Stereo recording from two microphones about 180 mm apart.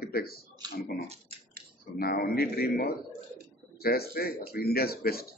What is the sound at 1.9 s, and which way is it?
A man's voice, 60° left (ahead or behind).